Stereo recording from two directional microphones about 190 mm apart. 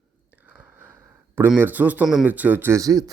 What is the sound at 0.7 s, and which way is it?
Speech, 10° right (ahead or behind).